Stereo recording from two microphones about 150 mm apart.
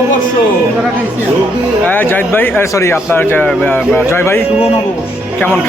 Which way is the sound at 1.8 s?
15° left (ahead or behind).